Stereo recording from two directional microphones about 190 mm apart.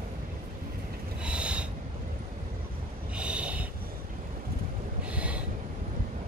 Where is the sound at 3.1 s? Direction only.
5° right (ahead or behind).